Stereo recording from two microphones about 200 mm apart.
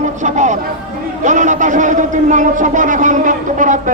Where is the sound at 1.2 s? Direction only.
40° right (ahead or behind).